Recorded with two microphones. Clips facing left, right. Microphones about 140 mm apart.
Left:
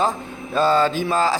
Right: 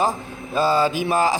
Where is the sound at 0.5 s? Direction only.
10° right (ahead or behind).